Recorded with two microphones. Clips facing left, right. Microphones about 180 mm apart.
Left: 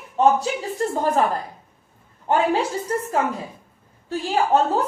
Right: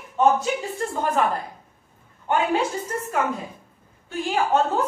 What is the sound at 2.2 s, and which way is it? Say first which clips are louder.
Speech: left 2 dB; 35° left (ahead or behind).